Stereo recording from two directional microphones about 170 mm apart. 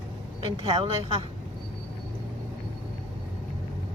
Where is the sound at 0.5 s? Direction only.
30° right (ahead or behind).